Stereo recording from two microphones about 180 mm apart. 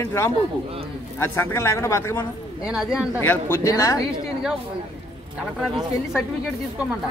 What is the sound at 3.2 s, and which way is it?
Speech, 10° left (ahead or behind).